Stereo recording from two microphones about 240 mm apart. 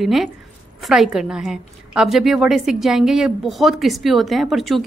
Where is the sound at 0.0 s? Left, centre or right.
Centre.